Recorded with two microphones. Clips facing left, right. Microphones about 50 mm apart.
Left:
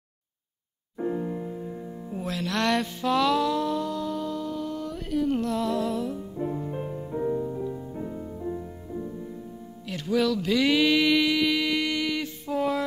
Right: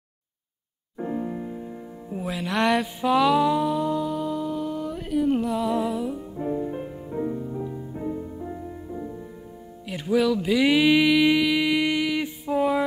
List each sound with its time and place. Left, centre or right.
1.1 s music: centre
7.2 s music: centre
7.5 s music: centre
9.8 s speech: centre
11.4 s music: centre